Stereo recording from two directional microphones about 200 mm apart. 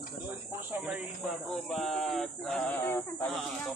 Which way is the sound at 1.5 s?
5° left (ahead or behind).